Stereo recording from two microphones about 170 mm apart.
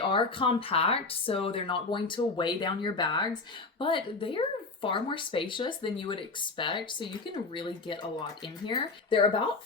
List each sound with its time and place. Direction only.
0.1 s speech: 30° left (ahead or behind)